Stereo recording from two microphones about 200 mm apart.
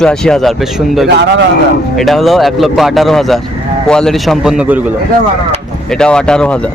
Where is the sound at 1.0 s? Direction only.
60° right (ahead or behind).